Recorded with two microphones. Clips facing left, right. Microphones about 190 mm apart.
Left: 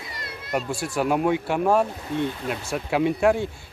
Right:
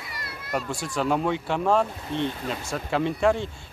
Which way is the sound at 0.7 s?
5° left (ahead or behind).